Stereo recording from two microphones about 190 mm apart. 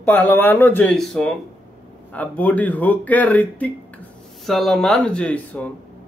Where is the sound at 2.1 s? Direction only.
10° left (ahead or behind).